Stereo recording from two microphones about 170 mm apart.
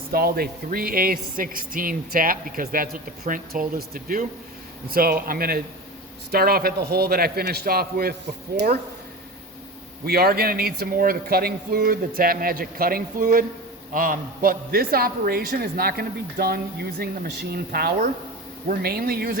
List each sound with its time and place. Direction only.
0.1 s speech: 65° right (ahead or behind)
10.1 s speech: 65° right (ahead or behind)